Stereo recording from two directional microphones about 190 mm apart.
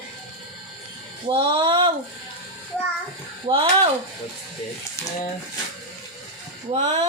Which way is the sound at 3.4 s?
25° right (ahead or behind).